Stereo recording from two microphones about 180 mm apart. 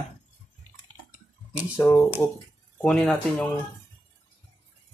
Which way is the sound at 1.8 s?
15° left (ahead or behind).